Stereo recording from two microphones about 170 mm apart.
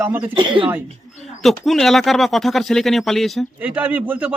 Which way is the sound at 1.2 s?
Centre (ahead or behind).